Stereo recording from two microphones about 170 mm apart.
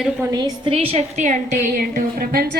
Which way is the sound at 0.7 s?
35° right (ahead or behind).